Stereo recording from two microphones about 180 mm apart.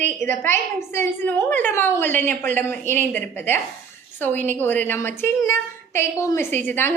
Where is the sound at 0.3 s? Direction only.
10° left (ahead or behind).